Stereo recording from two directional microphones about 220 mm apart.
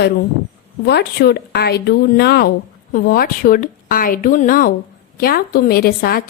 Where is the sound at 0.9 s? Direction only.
45° left (ahead or behind).